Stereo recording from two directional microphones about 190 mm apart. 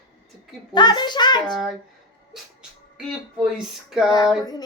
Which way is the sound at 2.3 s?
Centre (ahead or behind).